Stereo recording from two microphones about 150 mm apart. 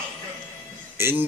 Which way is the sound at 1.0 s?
15° right (ahead or behind).